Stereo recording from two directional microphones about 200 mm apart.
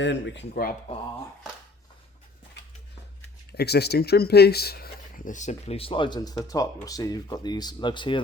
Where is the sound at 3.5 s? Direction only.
55° left (ahead or behind); by 8.2 s 25° left (ahead or behind).